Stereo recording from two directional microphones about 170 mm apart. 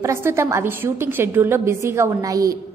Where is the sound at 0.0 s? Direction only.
15° right (ahead or behind).